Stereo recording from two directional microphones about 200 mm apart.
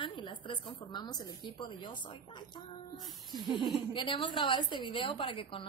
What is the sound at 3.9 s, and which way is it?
A woman's voice, 25° left (ahead or behind).